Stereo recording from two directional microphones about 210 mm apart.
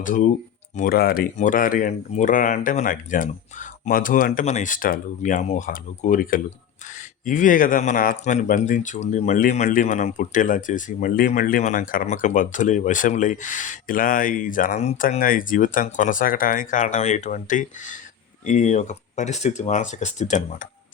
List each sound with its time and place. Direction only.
0.0 s speech: 40° left (ahead or behind)